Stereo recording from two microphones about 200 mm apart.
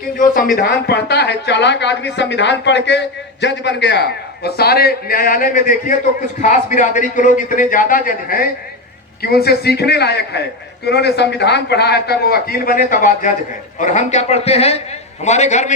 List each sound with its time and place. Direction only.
0.5 s a man's voice: 55° left (ahead or behind); by 15.7 s 35° left (ahead or behind)